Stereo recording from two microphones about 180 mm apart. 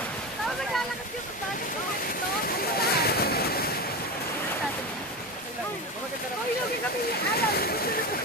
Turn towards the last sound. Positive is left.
turn(degrees=60)  # may be behind; listen again after turning